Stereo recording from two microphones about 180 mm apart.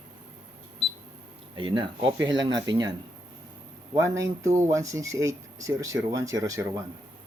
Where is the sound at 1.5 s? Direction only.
25° right (ahead or behind).